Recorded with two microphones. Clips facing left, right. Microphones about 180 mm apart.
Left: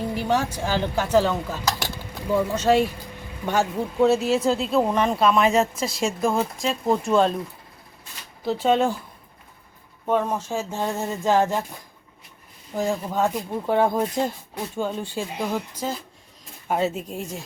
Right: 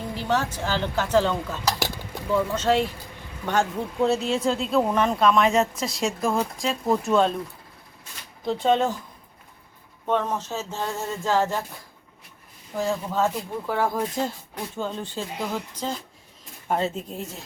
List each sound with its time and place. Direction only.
0.1 s a woman's voice: 15° left (ahead or behind)
8.4 s a woman's voice: 5° left (ahead or behind)
10.1 s a woman's voice: 10° left (ahead or behind)
12.7 s a woman's voice: 15° left (ahead or behind)